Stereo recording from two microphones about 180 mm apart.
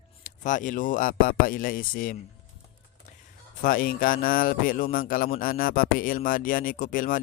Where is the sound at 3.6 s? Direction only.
50° left (ahead or behind).